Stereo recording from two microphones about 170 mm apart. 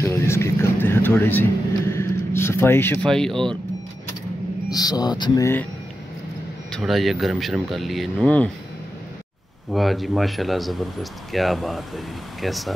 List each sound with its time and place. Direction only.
0.0 s vehicle: 15° left (ahead or behind)
4.6 s speech: 20° left (ahead or behind)
6.7 s speech: centre (ahead or behind)
9.7 s speech: centre (ahead or behind)